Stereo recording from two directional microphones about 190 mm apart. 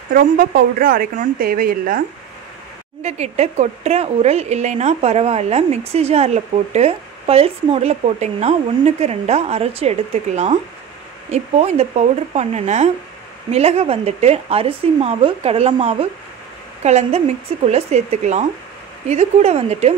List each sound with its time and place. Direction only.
0.1 s a woman's voice: 50° right (ahead or behind)
3.0 s speech: 35° right (ahead or behind)